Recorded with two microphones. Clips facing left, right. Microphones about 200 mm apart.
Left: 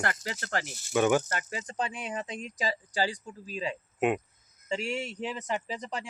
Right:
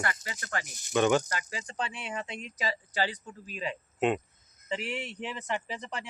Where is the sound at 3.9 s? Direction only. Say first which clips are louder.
Even; 10° left (ahead or behind).